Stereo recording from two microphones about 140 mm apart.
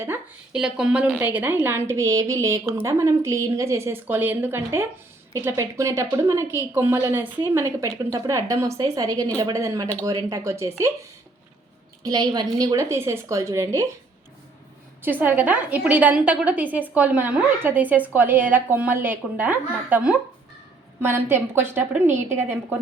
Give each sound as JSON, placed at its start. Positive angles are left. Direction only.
{"t": 0.5, "sound": "a woman's voice", "side_deg": -5}
{"t": 12.0, "sound": "a woman's voice", "side_deg": -30}
{"t": 15.0, "sound": "a woman's voice", "side_deg": -10}